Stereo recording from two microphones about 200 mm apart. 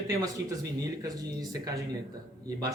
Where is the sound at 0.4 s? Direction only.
60° right (ahead or behind).